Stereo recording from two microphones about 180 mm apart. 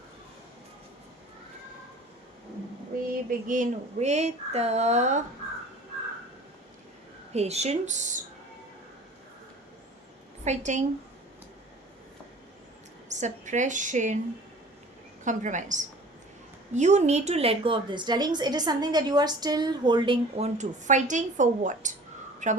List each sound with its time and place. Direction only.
3.2 s speech: 50° right (ahead or behind)
7.3 s speech: 35° right (ahead or behind)
10.4 s speech: 40° right (ahead or behind)
13.1 s a woman's voice: 40° right (ahead or behind)
15.2 s a woman's voice: 45° right (ahead or behind)